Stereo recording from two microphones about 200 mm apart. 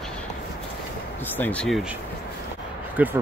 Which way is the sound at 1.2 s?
10° left (ahead or behind).